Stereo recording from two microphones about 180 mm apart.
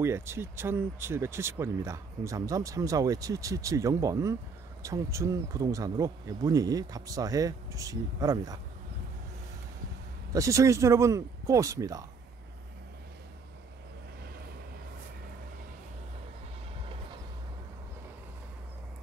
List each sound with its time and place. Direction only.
0.0 s speech: 15° right (ahead or behind)
10.3 s speech: 15° right (ahead or behind)